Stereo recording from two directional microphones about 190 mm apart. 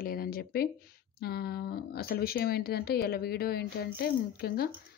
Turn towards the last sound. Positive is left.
turn(degrees=55)  # may be behind; listen again after turning